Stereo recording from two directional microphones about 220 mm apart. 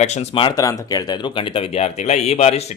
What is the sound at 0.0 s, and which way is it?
Speech, 30° left (ahead or behind).